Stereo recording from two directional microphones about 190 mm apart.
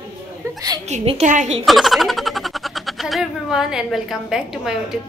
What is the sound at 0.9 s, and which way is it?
Speech, 35° right (ahead or behind).